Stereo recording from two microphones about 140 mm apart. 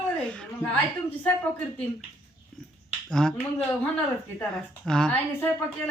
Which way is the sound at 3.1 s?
5° left (ahead or behind).